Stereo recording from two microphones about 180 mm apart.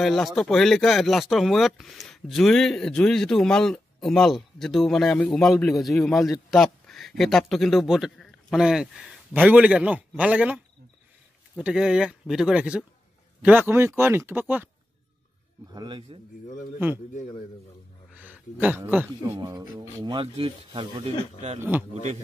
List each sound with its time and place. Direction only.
0.0 s a man's voice: centre (ahead or behind)
15.7 s speech: 25° right (ahead or behind)
18.1 s speech: 10° right (ahead or behind); by 21.5 s 35° right (ahead or behind)
21.5 s speech: 10° right (ahead or behind)